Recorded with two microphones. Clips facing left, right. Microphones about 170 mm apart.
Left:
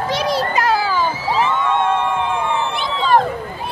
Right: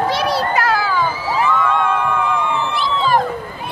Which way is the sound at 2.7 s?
Centre (ahead or behind).